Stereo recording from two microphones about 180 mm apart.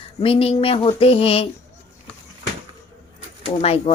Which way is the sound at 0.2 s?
30° left (ahead or behind).